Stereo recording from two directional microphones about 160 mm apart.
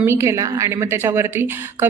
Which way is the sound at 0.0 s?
15° right (ahead or behind).